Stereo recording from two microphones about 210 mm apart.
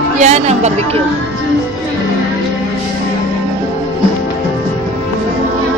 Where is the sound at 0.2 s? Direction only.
30° right (ahead or behind).